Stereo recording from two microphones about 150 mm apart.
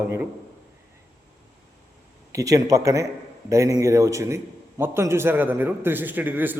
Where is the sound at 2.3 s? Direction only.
20° right (ahead or behind).